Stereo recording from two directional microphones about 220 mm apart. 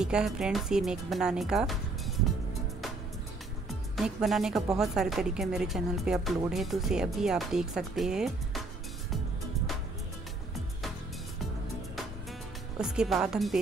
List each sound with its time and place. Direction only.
0.0 s speech: 5° right (ahead or behind)
3.9 s speech: centre (ahead or behind)
12.7 s speech: 5° right (ahead or behind)